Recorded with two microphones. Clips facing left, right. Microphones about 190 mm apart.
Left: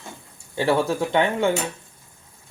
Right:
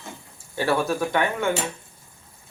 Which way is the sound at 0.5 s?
25° left (ahead or behind).